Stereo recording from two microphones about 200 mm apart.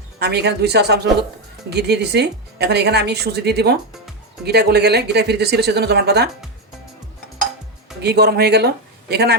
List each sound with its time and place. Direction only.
0.2 s speech: 55° right (ahead or behind)
8.0 s speech: 55° right (ahead or behind)